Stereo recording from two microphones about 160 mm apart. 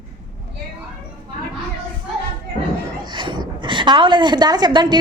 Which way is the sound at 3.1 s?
30° right (ahead or behind).